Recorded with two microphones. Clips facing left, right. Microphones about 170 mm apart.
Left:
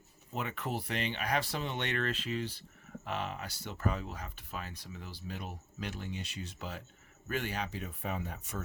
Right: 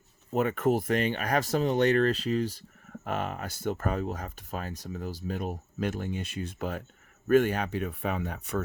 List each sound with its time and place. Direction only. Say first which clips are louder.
0.3 s speech: right 12 dB; 50° right (ahead or behind); by 8.6 s 65° right (ahead or behind)